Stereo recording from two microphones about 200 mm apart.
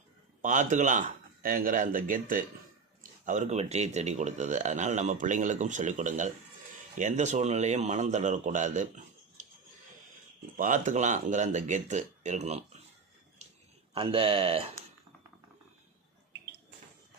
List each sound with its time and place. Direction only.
0.4 s speech: 40° right (ahead or behind)
10.6 s speech: 40° right (ahead or behind)
13.9 s speech: 25° right (ahead or behind)